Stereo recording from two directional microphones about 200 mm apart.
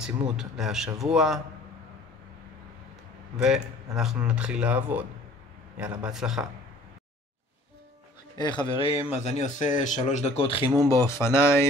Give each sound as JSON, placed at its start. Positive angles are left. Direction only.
{"t": 0.4, "sound": "speech", "side_deg": 0}
{"t": 3.3, "sound": "speech", "side_deg": -5}
{"t": 8.4, "sound": "speech", "side_deg": 20}
{"t": 10.9, "sound": "speech", "side_deg": 15}